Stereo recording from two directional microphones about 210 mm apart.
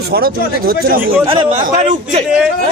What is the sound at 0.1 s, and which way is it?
Speech, 45° right (ahead or behind).